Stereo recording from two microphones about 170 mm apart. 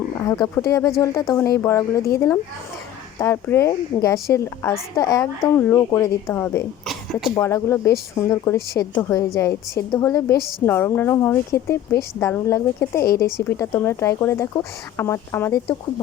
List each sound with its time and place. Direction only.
0.2 s speech: 20° left (ahead or behind)
6.8 s a sound: centre (ahead or behind)
7.3 s speech: 15° left (ahead or behind)